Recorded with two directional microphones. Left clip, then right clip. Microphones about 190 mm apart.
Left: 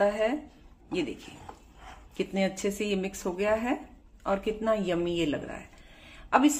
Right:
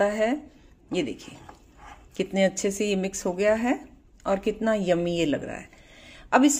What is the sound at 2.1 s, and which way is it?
Speech, 35° right (ahead or behind).